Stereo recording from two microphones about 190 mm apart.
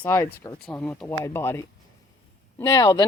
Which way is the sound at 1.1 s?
15° left (ahead or behind).